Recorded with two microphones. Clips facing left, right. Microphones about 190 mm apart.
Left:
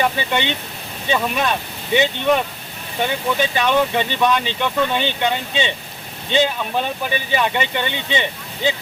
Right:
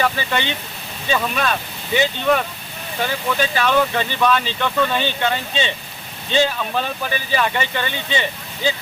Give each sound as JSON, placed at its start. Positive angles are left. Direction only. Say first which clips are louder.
{"t": 0.0, "sound": "speech", "louder": "left 1 dB", "side_deg": 20}